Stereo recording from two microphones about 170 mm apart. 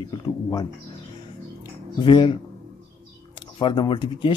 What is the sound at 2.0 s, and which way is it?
Speech, 30° left (ahead or behind).